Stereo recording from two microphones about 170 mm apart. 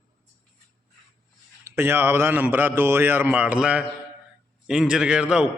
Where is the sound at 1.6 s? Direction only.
15° right (ahead or behind).